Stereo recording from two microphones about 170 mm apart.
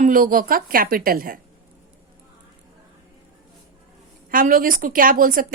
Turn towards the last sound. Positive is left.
turn(degrees=-55)  # may be behind; listen again after turning